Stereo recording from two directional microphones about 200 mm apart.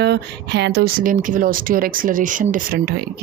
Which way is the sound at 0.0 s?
55° right (ahead or behind).